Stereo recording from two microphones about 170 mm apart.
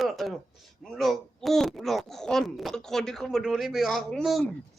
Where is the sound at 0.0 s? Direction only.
Centre (ahead or behind).